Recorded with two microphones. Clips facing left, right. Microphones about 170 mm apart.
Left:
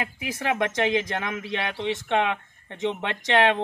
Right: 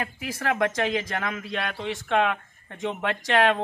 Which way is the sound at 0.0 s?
15° left (ahead or behind).